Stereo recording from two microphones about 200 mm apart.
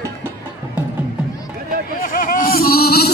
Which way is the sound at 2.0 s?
45° left (ahead or behind).